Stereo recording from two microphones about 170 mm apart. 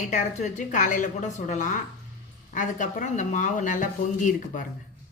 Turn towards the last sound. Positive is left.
turn(degrees=50)  # may be behind; listen again after turning